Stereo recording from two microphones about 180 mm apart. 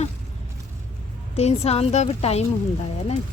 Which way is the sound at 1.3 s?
35° left (ahead or behind).